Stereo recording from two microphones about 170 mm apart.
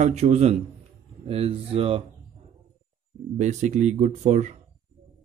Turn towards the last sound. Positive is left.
turn(degrees=-45)  # may be behind; listen again after turning